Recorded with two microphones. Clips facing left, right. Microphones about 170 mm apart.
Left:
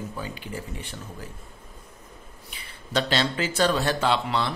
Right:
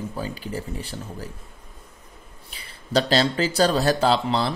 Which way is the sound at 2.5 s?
35° right (ahead or behind).